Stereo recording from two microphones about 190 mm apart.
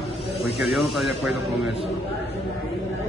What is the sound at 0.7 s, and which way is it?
Speech, centre (ahead or behind).